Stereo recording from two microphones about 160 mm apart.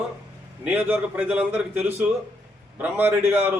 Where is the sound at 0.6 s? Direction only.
10° right (ahead or behind).